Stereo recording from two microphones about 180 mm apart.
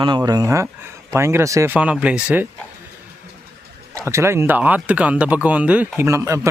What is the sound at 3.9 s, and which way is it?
Speech, 15° right (ahead or behind).